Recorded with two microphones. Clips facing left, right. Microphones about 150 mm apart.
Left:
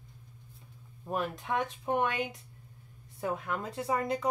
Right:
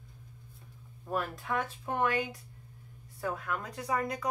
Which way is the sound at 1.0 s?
20° left (ahead or behind).